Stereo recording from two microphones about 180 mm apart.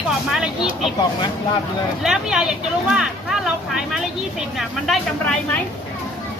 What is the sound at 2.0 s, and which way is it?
Speech, 5° right (ahead or behind).